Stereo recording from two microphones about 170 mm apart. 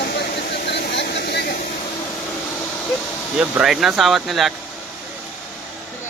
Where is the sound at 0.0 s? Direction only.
75° left (ahead or behind).